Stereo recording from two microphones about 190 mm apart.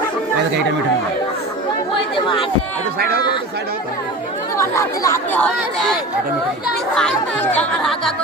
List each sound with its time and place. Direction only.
2.1 s speech: 25° left (ahead or behind)
4.5 s speech: 15° left (ahead or behind)
7.5 s speech: 5° left (ahead or behind)